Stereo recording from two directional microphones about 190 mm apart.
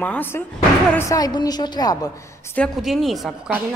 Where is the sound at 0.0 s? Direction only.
10° left (ahead or behind).